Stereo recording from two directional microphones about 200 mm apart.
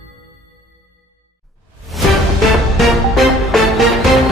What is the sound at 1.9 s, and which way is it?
Music, centre (ahead or behind).